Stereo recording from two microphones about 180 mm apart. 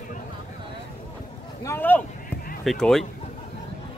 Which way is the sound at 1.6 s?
10° left (ahead or behind).